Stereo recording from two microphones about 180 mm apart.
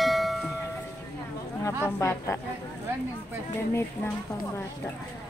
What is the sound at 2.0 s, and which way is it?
Speech, 15° left (ahead or behind).